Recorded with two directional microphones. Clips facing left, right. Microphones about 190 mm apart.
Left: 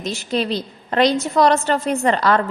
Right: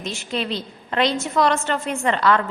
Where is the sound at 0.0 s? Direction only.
40° left (ahead or behind).